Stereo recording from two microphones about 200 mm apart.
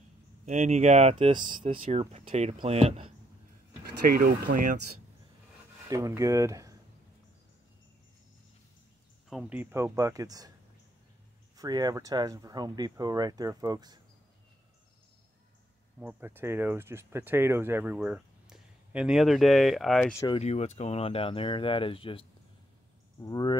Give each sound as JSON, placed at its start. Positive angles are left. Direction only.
{"t": 0.5, "sound": "speech", "side_deg": -35}
{"t": 4.0, "sound": "speech", "side_deg": -45}
{"t": 5.9, "sound": "speech", "side_deg": -15}
{"t": 9.3, "sound": "speech", "side_deg": -5}
{"t": 11.5, "sound": "speech", "side_deg": -20}
{"t": 16.0, "sound": "speech", "side_deg": -10}
{"t": 20.2, "sound": "speech", "side_deg": 20}
{"t": 20.4, "sound": "speech", "side_deg": 35}
{"t": 23.2, "sound": "speech", "side_deg": 20}